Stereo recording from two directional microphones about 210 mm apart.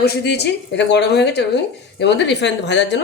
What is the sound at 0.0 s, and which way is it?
Speech, 50° left (ahead or behind).